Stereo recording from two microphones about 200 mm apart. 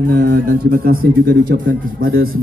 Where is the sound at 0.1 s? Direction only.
45° right (ahead or behind).